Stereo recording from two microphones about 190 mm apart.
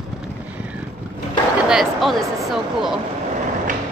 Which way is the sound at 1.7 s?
Centre (ahead or behind).